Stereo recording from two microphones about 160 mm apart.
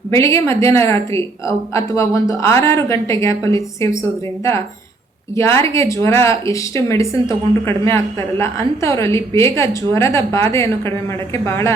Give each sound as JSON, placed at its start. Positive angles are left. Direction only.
{"t": 0.1, "sound": "speech", "side_deg": 20}
{"t": 5.3, "sound": "a woman's voice", "side_deg": 15}